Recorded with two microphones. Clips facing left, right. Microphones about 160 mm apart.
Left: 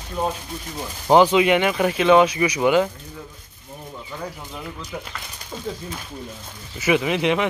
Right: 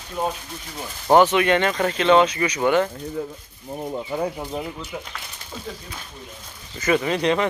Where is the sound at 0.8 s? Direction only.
10° left (ahead or behind).